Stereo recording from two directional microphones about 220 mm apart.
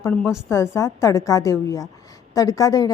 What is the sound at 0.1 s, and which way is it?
A woman's voice, 5° left (ahead or behind).